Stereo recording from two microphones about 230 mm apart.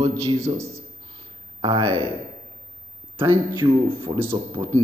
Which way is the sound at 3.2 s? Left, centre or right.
Centre.